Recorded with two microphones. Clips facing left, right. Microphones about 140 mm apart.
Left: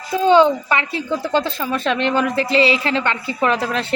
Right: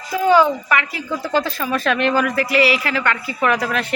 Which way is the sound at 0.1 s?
25° left (ahead or behind).